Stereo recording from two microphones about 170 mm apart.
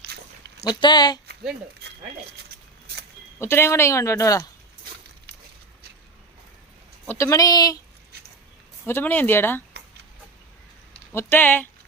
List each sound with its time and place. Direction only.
0.1 s walk: 70° right (ahead or behind)
0.7 s speech: 25° left (ahead or behind)
3.3 s speech: 15° left (ahead or behind)
7.1 s speech: 20° left (ahead or behind)
8.9 s speech: 10° left (ahead or behind)
11.1 s speech: 15° left (ahead or behind)